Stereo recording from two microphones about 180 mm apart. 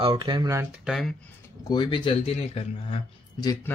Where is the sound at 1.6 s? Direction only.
25° left (ahead or behind).